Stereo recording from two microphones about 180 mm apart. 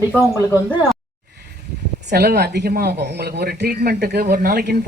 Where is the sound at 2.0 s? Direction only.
65° right (ahead or behind).